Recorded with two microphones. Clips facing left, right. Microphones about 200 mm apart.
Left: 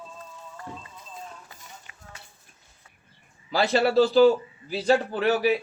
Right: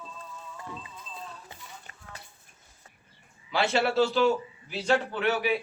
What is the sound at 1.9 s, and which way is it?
Clip-clop, 45° right (ahead or behind).